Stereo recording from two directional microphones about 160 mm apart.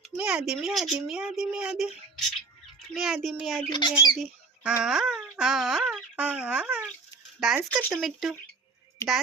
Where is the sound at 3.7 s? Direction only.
30° left (ahead or behind).